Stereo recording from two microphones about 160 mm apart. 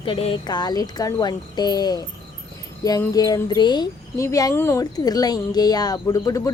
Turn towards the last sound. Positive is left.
turn(degrees=20)  # may be behind; listen again after turning